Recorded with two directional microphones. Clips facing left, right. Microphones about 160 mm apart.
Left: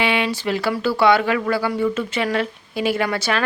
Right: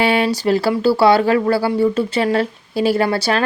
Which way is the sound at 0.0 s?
40° right (ahead or behind).